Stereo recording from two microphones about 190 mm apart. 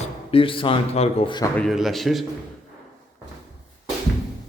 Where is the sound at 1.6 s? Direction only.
Centre (ahead or behind).